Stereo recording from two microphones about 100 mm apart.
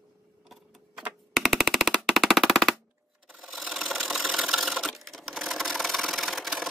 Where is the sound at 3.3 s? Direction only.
Centre (ahead or behind).